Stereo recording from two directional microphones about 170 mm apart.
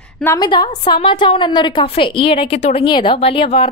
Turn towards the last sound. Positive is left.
turn(degrees=35)  # may be behind; listen again after turning